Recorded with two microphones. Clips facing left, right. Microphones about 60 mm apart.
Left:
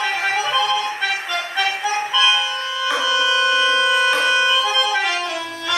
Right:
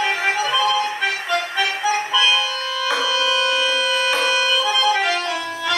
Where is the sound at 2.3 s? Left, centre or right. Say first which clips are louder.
Even; centre.